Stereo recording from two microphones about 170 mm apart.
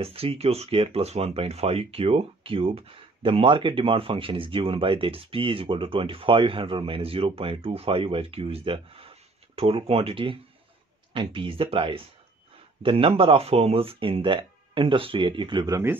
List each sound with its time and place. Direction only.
0.0 s speech: 35° right (ahead or behind); by 16.0 s 15° right (ahead or behind)